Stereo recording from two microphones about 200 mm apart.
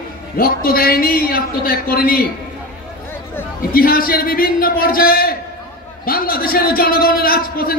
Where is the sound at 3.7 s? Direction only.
45° left (ahead or behind).